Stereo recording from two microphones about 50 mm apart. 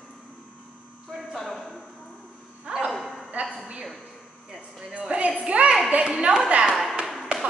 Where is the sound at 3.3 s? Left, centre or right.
Right.